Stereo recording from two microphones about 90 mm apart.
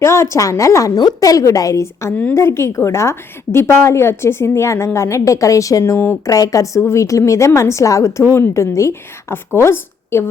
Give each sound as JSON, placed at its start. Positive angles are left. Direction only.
{"t": 0.0, "sound": "a woman's voice", "side_deg": 30}